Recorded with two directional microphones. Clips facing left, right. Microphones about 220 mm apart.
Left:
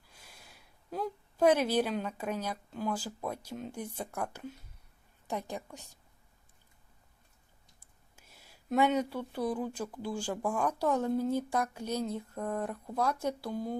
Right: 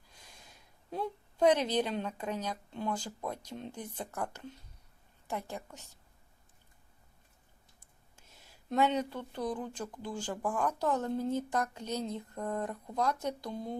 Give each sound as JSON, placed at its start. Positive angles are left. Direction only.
{"t": 0.1, "sound": "gasp", "side_deg": 10}
{"t": 0.9, "sound": "speech", "side_deg": 0}
{"t": 7.8, "sound": "speech", "side_deg": 10}